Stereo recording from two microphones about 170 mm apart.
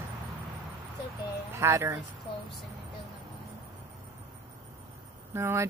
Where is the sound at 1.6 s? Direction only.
15° right (ahead or behind).